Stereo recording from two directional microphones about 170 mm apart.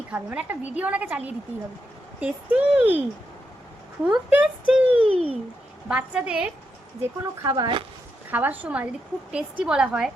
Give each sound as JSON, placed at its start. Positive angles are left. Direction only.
{"t": 0.1, "sound": "a woman's voice", "side_deg": -10}
{"t": 4.0, "sound": "speech", "side_deg": -5}
{"t": 5.0, "sound": "a sound", "side_deg": -35}
{"t": 5.9, "sound": "a woman's voice", "side_deg": -5}
{"t": 7.3, "sound": "speech", "side_deg": -25}
{"t": 8.3, "sound": "a woman's voice", "side_deg": -10}